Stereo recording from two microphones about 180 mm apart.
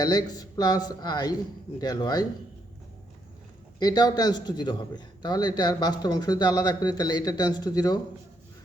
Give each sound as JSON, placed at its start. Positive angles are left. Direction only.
{"t": 0.0, "sound": "a man's voice", "side_deg": 20}
{"t": 3.8, "sound": "a man's voice", "side_deg": 20}